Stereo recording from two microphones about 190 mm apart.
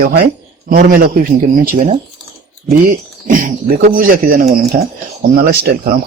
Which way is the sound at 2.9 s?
45° right (ahead or behind).